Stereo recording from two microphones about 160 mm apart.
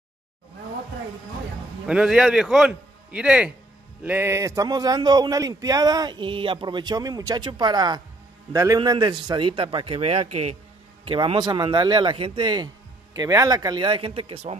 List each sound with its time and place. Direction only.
1.9 s a man's voice: 5° right (ahead or behind); by 14.6 s 40° right (ahead or behind)